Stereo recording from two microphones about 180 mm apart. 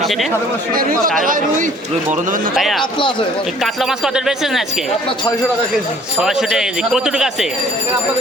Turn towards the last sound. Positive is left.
turn(degrees=-5)  # may be behind; listen again after turning